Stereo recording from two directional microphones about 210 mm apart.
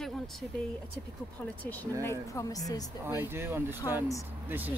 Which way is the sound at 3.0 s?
10° right (ahead or behind).